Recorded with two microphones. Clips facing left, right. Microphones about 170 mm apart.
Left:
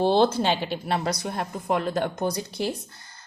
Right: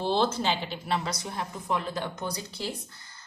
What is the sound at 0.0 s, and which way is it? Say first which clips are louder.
Speech: left 6 dB; 60° left (ahead or behind).